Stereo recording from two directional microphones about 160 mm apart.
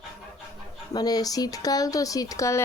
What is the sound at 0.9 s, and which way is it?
Speech, 25° left (ahead or behind).